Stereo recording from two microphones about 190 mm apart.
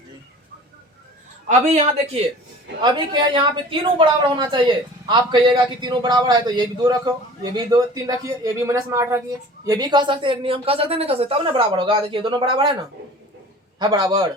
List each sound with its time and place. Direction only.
1.5 s a man's voice: 35° right (ahead or behind)
2.8 s speech: 25° right (ahead or behind)
13.7 s speech: 25° right (ahead or behind)